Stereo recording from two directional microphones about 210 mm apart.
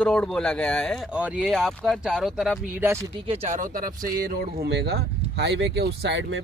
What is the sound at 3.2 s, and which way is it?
Speech, 30° right (ahead or behind).